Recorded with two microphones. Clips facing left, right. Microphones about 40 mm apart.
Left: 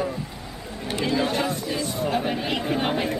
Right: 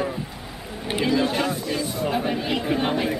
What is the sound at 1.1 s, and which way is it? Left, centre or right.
Speech, centre.